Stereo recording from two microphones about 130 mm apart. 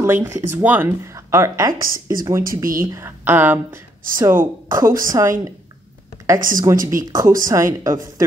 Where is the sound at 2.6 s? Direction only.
90° right.